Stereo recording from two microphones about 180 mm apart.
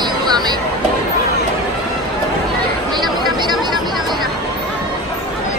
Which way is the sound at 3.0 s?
25° right (ahead or behind).